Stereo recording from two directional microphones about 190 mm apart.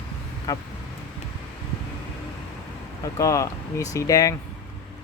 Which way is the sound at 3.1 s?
15° left (ahead or behind).